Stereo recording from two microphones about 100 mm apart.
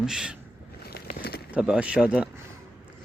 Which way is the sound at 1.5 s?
10° right (ahead or behind).